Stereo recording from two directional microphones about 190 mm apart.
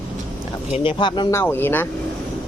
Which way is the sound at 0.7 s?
25° left (ahead or behind).